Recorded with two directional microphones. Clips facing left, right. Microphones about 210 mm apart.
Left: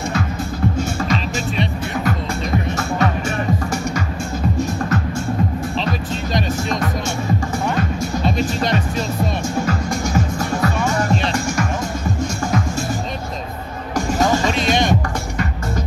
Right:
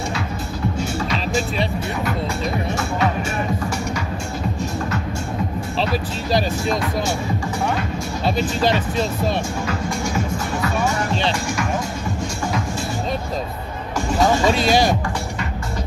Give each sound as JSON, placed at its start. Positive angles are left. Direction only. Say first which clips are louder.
{"t": 1.1, "sound": "music", "louder": "right 1 dB", "side_deg": -35}
{"t": 8.6, "sound": "speech", "louder": "right 1 dB", "side_deg": -30}
{"t": 14.5, "sound": "speech", "louder": "right 1 dB", "side_deg": -35}